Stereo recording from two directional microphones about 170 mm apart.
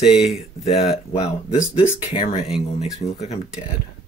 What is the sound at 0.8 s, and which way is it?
Speech, 35° left (ahead or behind).